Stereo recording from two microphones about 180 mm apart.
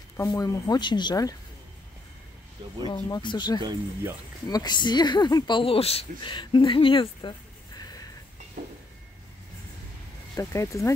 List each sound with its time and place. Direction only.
0.2 s speech: 20° left (ahead or behind)
2.9 s speech: 25° left (ahead or behind)
8.6 s a sound: 50° right (ahead or behind)
10.3 s speech: 15° left (ahead or behind)